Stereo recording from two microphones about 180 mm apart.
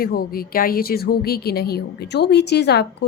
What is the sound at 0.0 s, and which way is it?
A woman's voice, 55° left (ahead or behind).